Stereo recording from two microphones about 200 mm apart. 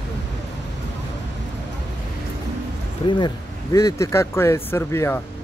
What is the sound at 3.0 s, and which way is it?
Speech, 20° left (ahead or behind).